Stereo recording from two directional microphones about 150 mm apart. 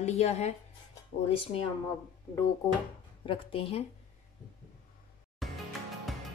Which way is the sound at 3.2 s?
35° left (ahead or behind).